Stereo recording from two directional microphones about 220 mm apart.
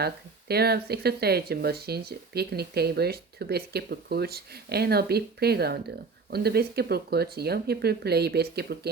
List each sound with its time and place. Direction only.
0.0 s speech: 45° right (ahead or behind)